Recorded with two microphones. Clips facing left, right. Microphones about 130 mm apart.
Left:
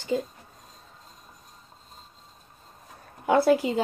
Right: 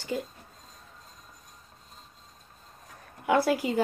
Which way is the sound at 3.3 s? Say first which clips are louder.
Left 4 dB; 25° left (ahead or behind).